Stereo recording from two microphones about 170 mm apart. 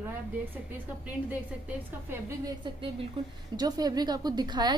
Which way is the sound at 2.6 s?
30° right (ahead or behind).